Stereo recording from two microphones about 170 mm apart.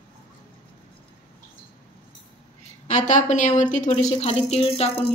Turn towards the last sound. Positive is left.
turn(degrees=35)  # may be behind; listen again after turning